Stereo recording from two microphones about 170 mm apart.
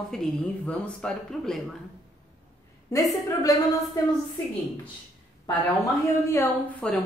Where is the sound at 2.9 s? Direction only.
20° left (ahead or behind).